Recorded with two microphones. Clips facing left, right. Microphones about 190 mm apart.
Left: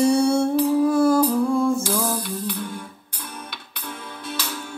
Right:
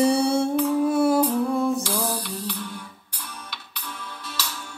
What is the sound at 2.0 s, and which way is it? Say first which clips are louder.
Music: left 3 dB; 50° left (ahead or behind).